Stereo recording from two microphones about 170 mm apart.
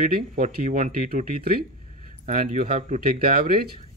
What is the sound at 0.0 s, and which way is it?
Speech, 55° right (ahead or behind).